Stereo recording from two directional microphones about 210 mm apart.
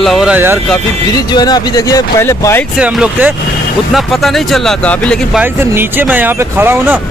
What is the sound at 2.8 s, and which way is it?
Speech, 5° right (ahead or behind).